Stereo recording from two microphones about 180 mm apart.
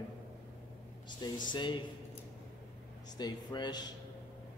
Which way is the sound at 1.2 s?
25° left (ahead or behind).